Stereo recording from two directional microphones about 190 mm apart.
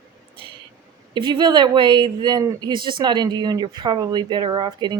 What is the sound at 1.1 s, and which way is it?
Speech, 25° right (ahead or behind).